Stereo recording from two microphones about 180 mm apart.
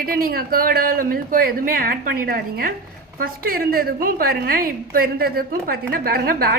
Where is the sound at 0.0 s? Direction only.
55° right (ahead or behind).